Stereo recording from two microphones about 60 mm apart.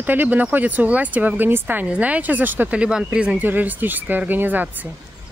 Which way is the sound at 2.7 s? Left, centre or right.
Centre.